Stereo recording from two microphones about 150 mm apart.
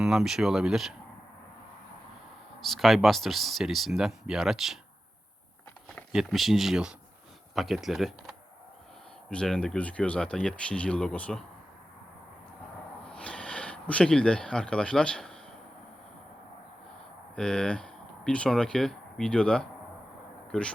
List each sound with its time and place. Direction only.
0.0 s speech: 5° right (ahead or behind)
2.6 s speech: centre (ahead or behind)
6.1 s speech: centre (ahead or behind)
13.1 s speech: 5° left (ahead or behind)
17.3 s speech: 5° left (ahead or behind)